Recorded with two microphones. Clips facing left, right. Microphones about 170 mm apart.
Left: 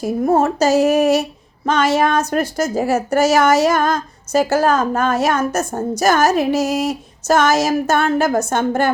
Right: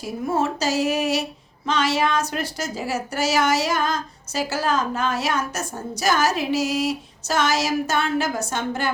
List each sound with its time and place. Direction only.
0.0 s a woman's voice: 50° left (ahead or behind)